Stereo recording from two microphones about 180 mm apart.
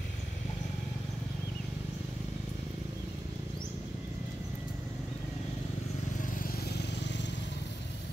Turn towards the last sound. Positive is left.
turn(degrees=75)  # may be behind; listen again after turning